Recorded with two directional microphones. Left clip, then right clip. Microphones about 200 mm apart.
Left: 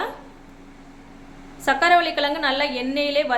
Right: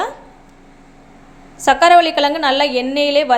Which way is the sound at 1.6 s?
30° right (ahead or behind).